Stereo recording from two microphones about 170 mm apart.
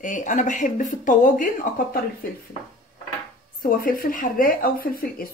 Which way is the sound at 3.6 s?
55° left (ahead or behind).